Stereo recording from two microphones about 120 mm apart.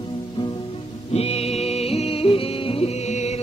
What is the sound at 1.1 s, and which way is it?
Music, 60° left (ahead or behind).